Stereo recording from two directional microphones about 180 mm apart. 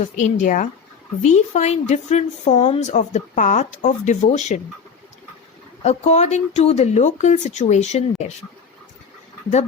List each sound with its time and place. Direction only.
0.2 s speech: 45° left (ahead or behind)
5.8 s speech: 40° left (ahead or behind)